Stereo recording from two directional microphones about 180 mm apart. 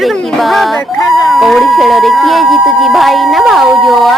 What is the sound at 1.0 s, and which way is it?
Speech, 20° left (ahead or behind).